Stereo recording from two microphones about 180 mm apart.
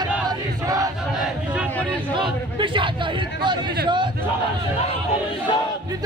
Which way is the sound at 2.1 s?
25° right (ahead or behind).